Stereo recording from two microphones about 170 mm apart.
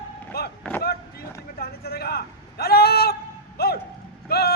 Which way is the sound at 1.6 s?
65° left (ahead or behind).